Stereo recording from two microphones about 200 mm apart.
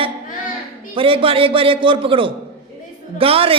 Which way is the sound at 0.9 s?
25° right (ahead or behind).